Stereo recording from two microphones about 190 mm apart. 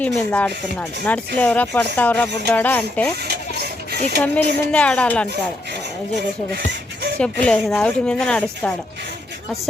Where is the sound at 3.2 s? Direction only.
55° right (ahead or behind).